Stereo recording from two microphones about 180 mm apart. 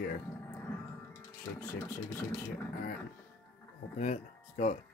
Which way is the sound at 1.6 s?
15° left (ahead or behind).